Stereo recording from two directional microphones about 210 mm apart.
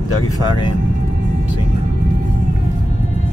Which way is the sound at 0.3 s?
20° left (ahead or behind).